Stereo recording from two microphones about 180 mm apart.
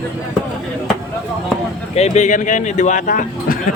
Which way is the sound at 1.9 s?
40° left (ahead or behind).